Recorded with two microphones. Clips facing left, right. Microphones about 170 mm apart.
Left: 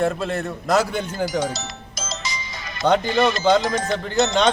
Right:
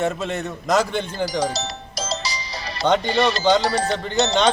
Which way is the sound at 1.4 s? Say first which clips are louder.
Right 1 dB; 35° right (ahead or behind).